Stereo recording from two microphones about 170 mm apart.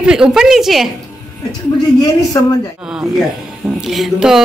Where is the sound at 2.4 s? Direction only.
15° left (ahead or behind).